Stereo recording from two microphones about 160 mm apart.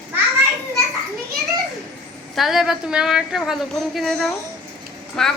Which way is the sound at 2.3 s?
Centre (ahead or behind).